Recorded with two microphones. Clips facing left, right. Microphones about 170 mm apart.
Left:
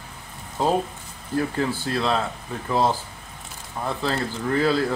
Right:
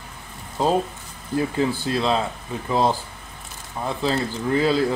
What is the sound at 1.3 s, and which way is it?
Speech, 20° right (ahead or behind).